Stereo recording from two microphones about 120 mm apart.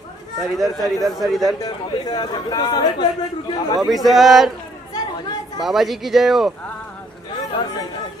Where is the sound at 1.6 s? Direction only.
35° left (ahead or behind).